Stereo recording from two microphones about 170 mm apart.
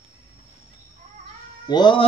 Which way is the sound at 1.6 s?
25° left (ahead or behind).